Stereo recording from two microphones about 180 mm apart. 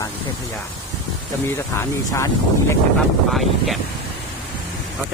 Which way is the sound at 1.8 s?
15° left (ahead or behind).